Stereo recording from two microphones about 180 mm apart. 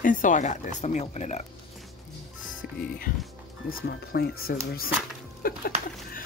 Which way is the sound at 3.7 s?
60° left (ahead or behind).